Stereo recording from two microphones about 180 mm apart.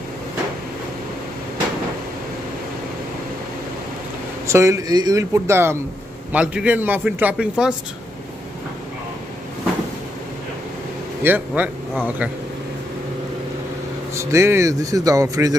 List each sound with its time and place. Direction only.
4.5 s a man's voice: 15° right (ahead or behind)
11.2 s a man's voice: 10° right (ahead or behind)
14.1 s a man's voice: 15° right (ahead or behind)